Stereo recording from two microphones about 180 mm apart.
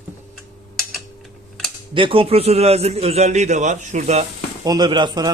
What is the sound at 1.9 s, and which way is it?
A man's voice, 30° right (ahead or behind).